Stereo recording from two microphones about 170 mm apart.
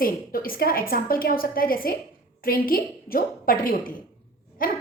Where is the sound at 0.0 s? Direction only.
55° left (ahead or behind).